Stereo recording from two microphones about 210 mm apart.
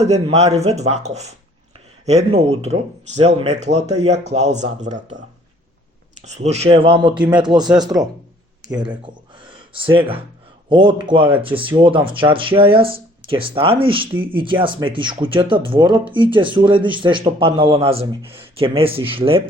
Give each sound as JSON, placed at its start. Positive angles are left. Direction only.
{"t": 0.0, "sound": "speech", "side_deg": -30}
{"t": 6.2, "sound": "speech", "side_deg": -30}
{"t": 8.9, "sound": "a sound", "side_deg": -25}
{"t": 10.7, "sound": "speech", "side_deg": -25}